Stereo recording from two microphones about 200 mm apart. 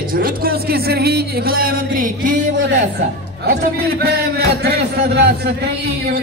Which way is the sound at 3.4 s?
50° right (ahead or behind).